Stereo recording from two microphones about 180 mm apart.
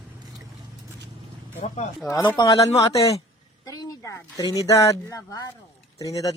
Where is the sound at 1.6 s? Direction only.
40° left (ahead or behind).